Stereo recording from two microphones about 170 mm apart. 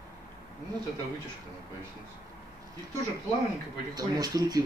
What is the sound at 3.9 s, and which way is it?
Speech, 20° right (ahead or behind).